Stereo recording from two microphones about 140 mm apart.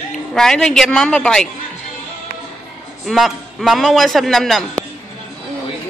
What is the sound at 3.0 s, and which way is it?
A man's voice, centre (ahead or behind).